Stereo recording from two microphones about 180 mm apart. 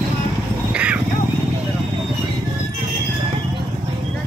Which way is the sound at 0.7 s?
5° right (ahead or behind).